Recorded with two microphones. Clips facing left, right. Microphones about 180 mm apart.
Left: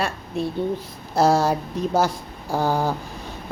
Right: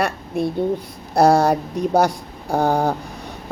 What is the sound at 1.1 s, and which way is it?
A woman's voice, 60° right (ahead or behind).